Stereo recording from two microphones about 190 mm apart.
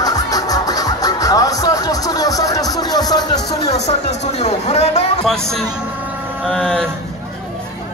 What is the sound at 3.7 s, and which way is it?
Speech, 35° left (ahead or behind).